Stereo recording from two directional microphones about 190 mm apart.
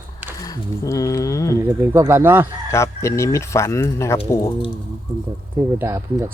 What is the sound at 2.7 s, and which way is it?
Speech, 15° left (ahead or behind).